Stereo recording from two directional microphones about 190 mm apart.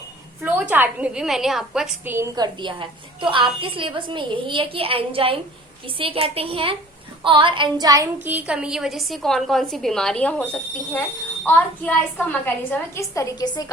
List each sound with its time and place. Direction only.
0.4 s a woman's voice: 10° right (ahead or behind)
2.1 s a woman's voice: 20° right (ahead or behind); by 10.4 s 5° left (ahead or behind)
11.4 s a woman's voice: 10° left (ahead or behind)